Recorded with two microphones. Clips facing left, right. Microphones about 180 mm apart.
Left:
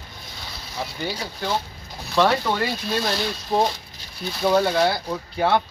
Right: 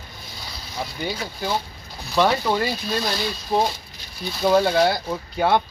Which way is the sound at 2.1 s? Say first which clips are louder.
Even; 5° right (ahead or behind).